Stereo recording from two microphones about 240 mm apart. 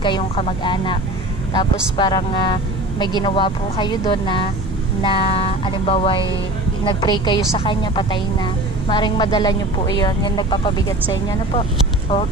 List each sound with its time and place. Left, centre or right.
0.0 s a woman's voice: left